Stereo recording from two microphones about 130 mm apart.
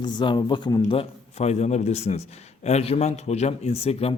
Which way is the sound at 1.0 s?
55° left (ahead or behind).